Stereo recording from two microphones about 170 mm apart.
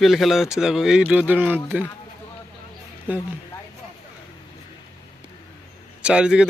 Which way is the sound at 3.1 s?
10° right (ahead or behind).